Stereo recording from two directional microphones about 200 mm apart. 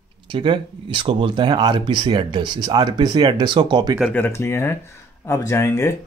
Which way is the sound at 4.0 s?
10° left (ahead or behind).